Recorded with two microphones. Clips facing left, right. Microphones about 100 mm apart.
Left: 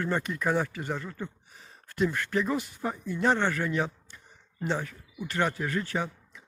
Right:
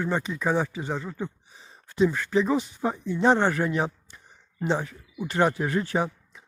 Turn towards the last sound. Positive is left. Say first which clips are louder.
# right 5 dB
turn(degrees=-35)  # may be behind; listen again after turning